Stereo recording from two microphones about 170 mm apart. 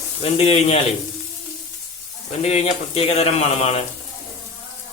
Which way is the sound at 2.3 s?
40° left (ahead or behind).